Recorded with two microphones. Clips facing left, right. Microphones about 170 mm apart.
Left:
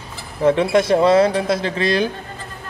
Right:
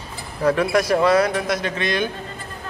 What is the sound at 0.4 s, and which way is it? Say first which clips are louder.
Speech: left 3 dB; 25° left (ahead or behind).